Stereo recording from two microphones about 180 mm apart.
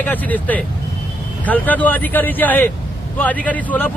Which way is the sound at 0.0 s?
10° left (ahead or behind).